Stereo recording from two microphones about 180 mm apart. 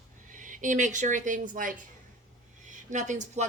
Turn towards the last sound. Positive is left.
turn(degrees=-40)  # may be behind; listen again after turning